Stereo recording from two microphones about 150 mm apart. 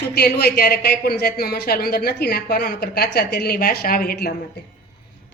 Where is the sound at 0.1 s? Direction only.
90° left.